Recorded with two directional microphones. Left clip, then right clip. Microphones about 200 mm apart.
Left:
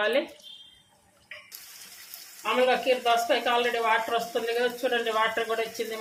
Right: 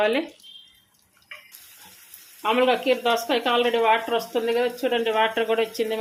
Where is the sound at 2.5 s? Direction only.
40° right (ahead or behind).